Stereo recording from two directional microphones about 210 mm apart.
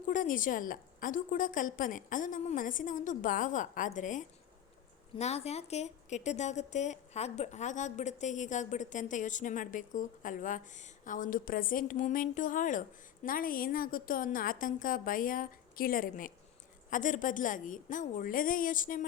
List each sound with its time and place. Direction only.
0.1 s a woman's voice: 40° left (ahead or behind)